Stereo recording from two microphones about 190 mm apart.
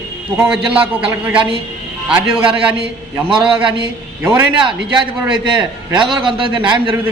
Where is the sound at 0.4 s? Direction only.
5° right (ahead or behind).